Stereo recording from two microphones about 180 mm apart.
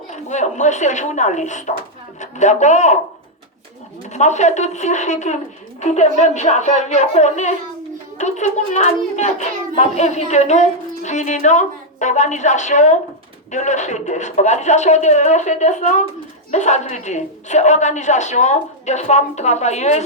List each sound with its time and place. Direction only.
0.1 s a child's voice: 40° left (ahead or behind)
4.1 s a child's voice: 40° left (ahead or behind)